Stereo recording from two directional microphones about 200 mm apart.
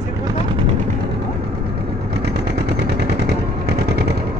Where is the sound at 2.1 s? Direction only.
55° right (ahead or behind).